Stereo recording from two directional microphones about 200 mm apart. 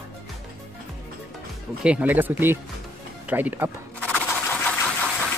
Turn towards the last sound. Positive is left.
turn(degrees=5)  # may be behind; listen again after turning